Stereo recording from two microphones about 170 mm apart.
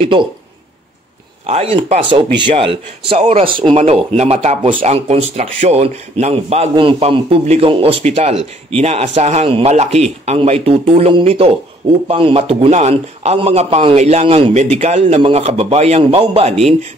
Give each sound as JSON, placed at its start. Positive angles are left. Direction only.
{"t": 0.0, "sound": "a man's voice", "side_deg": -30}
{"t": 1.4, "sound": "a man's voice", "side_deg": -35}